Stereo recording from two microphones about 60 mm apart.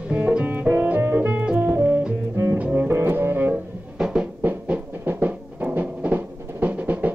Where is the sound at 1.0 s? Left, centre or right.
Right.